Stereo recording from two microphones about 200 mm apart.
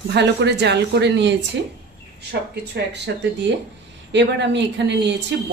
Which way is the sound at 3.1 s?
60° right (ahead or behind).